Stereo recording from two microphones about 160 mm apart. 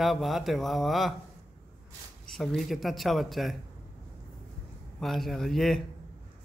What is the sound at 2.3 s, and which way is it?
Speech, centre (ahead or behind).